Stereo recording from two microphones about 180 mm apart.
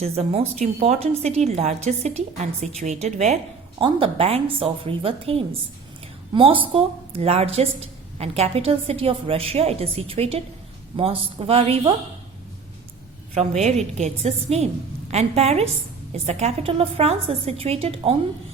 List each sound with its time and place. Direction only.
0.0 s a woman's voice: 35° right (ahead or behind)
13.3 s a woman's voice: 40° right (ahead or behind)